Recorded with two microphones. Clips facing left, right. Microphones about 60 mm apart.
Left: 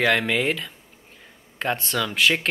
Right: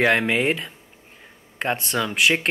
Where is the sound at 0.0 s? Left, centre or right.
Centre.